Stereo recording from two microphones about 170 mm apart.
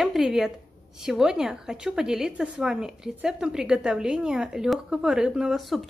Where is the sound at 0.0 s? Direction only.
Centre (ahead or behind).